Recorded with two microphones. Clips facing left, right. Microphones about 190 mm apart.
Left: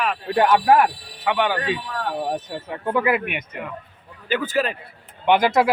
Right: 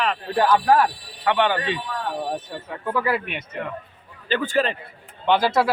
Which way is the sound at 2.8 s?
20° left (ahead or behind).